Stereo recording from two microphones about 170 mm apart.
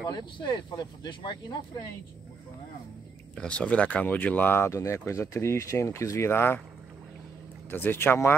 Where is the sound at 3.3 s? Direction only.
5° left (ahead or behind).